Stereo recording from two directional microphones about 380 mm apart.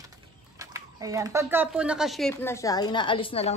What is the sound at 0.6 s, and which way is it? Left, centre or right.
Speech, centre.